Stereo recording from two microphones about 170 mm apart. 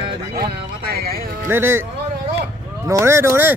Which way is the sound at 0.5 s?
65° right (ahead or behind).